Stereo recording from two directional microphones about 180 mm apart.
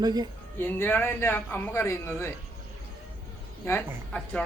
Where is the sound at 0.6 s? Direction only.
10° left (ahead or behind).